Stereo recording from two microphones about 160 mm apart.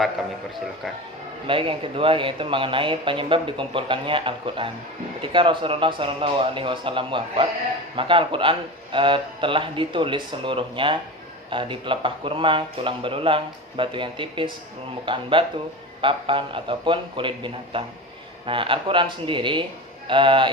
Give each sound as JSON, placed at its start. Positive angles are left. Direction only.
{"t": 1.5, "sound": "speech", "side_deg": -35}